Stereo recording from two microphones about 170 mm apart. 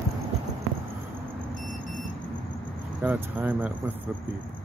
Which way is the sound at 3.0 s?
10° right (ahead or behind).